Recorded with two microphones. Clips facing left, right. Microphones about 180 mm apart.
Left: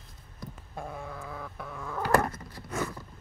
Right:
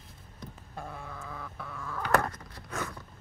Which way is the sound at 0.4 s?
15° left (ahead or behind).